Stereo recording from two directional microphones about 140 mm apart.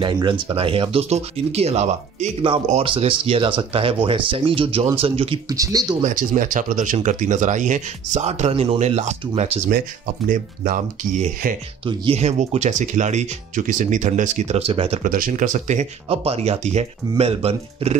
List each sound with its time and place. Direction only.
0.0 s speech: 35° right (ahead or behind); by 2.3 s 50° right (ahead or behind)
2.8 s speech: 40° right (ahead or behind)
5.5 s speech: 25° right (ahead or behind)
6.0 s speech: 65° right (ahead or behind)
9.7 s speech: 80° right; by 11.5 s 65° right (ahead or behind)
11.8 s speech: 50° right (ahead or behind)
15.0 s speech: 80° right; by 15.9 s 60° right (ahead or behind)
16.1 s speech: 45° right (ahead or behind)